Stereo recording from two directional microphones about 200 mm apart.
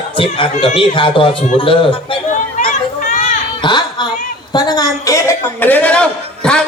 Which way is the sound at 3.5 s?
25° left (ahead or behind).